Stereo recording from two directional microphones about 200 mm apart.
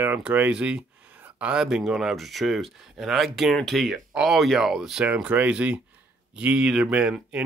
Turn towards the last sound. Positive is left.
turn(degrees=-5)  # may be behind; listen again after turning